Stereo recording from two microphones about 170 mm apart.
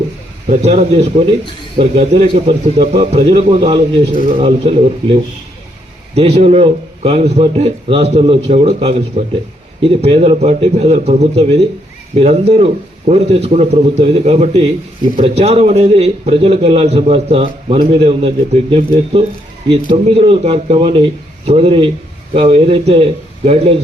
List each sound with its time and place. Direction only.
0.4 s a man's voice: 40° right (ahead or behind)